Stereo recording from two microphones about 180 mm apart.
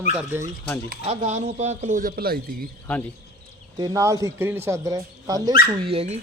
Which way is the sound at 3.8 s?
20° right (ahead or behind).